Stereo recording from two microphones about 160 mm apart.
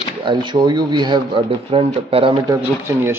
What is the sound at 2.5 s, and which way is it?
Speech, 15° right (ahead or behind).